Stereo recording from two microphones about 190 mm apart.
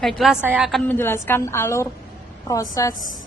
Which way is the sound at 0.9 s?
10° left (ahead or behind).